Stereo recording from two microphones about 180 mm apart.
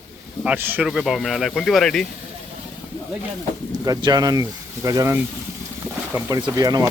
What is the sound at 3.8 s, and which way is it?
Speech, 20° right (ahead or behind).